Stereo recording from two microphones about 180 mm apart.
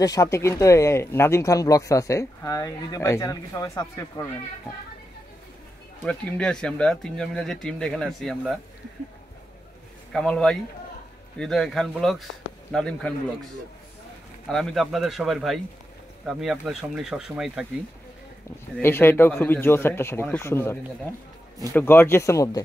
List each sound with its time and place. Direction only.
0.0 s speech: 20° left (ahead or behind)
6.0 s speech: 5° left (ahead or behind)
10.1 s speech: 5° left (ahead or behind)
14.5 s speech: centre (ahead or behind)
18.8 s speech: 10° left (ahead or behind)